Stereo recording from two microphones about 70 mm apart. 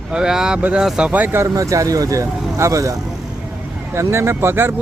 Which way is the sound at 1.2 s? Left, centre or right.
Right.